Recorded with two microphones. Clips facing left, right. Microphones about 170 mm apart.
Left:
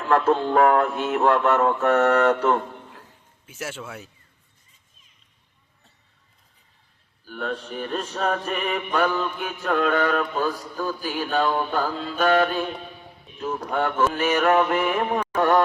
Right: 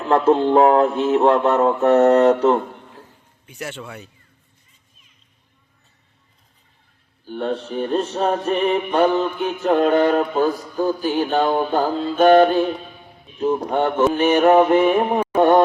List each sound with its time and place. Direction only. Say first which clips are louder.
0.0 s mantra: right 4 dB; 30° right (ahead or behind)
3.4 s speech: right 2 dB; 5° left (ahead or behind)
7.3 s mantra: right 6 dB; 30° right (ahead or behind)
10.8 s mantra: right 8 dB; 20° right (ahead or behind)
15.4 s a sound: right 6 dB; 25° right (ahead or behind)